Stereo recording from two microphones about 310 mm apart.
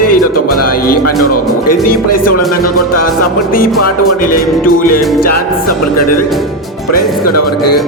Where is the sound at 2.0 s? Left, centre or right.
Left.